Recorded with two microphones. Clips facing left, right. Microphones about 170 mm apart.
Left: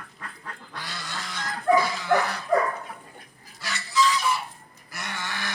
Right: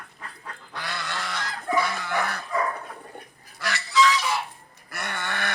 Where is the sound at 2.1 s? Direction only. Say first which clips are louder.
Left 4 dB; 55° right (ahead or behind).